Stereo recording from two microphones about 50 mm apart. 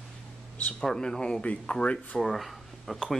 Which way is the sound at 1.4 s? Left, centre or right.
Left.